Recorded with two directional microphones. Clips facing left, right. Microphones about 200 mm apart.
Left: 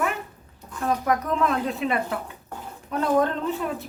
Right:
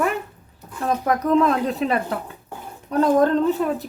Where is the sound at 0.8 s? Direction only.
35° right (ahead or behind).